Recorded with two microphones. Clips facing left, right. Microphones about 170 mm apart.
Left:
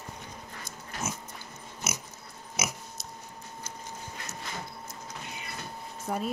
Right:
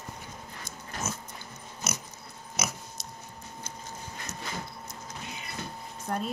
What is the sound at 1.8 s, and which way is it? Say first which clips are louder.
Dog: right 1 dB; 10° left (ahead or behind).